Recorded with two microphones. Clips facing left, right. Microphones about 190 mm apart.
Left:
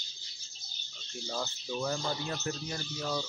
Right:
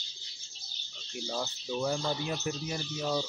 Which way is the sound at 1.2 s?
5° right (ahead or behind).